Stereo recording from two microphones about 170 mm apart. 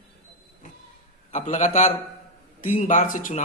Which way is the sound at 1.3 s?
45° left (ahead or behind).